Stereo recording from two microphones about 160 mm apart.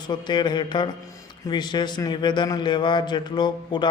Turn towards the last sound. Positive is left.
turn(degrees=25)  # may be behind; listen again after turning